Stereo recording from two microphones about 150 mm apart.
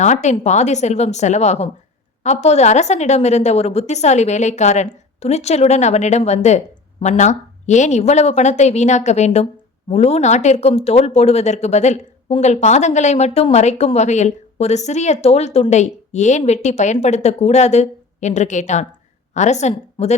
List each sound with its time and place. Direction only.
0.0 s a woman's voice: 50° left (ahead or behind)